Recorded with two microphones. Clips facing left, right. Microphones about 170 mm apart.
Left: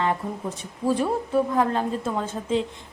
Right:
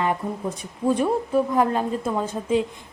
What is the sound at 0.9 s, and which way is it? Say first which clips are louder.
Speech: right 2 dB; centre (ahead or behind).